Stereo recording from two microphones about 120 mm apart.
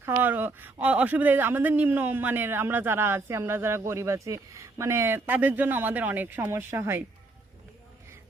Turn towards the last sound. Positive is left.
turn(degrees=-20)  # may be behind; listen again after turning